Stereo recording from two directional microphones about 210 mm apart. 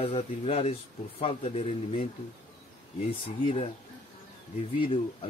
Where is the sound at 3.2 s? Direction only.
30° left (ahead or behind).